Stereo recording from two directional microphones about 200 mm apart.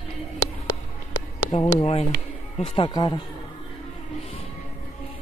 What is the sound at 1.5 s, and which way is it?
Speech, 30° left (ahead or behind).